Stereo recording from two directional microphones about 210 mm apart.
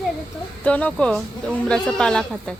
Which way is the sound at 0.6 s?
5° left (ahead or behind).